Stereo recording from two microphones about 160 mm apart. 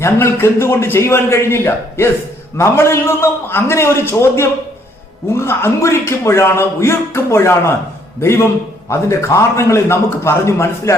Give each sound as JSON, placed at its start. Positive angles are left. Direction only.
{"t": 0.0, "sound": "a man's voice", "side_deg": 15}